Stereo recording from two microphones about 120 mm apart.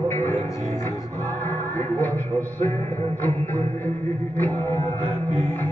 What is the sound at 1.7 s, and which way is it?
Music, 15° left (ahead or behind).